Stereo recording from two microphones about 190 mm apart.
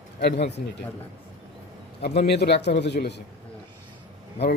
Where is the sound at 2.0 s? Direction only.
60° left (ahead or behind).